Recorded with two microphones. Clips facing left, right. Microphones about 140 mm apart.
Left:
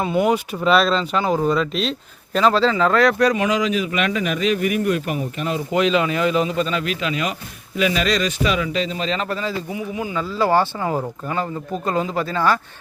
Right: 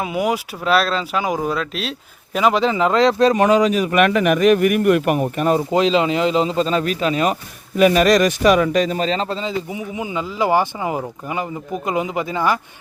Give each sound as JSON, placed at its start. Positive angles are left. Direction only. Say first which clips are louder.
{"t": 0.0, "sound": "speech", "louder": "left 2 dB", "side_deg": -5}
{"t": 3.3, "sound": "a man's voice", "louder": "right 5 dB", "side_deg": -40}
{"t": 5.7, "sound": "a man's voice", "louder": "right 2 dB", "side_deg": -25}